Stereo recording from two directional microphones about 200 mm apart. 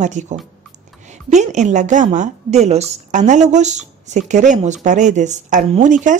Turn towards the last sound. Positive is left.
turn(degrees=-40)  # may be behind; listen again after turning